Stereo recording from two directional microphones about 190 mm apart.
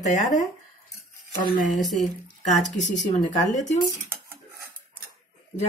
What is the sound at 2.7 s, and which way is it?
Speech, 40° left (ahead or behind).